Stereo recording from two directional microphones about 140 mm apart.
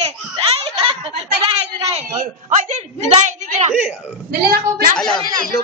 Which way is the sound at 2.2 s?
60° right (ahead or behind).